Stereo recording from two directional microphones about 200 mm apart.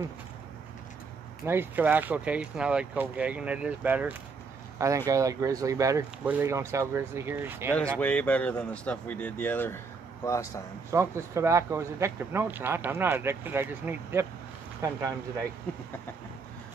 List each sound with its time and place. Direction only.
1.4 s speech: 10° right (ahead or behind)
8.0 s speech: 10° left (ahead or behind)
10.9 s speech: 15° right (ahead or behind)